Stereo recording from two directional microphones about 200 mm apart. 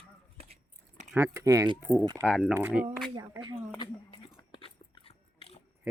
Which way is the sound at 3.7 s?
20° left (ahead or behind).